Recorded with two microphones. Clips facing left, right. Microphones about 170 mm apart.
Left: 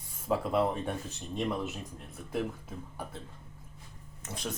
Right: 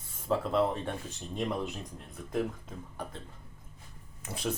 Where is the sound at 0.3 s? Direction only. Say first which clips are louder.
Even; 10° left (ahead or behind).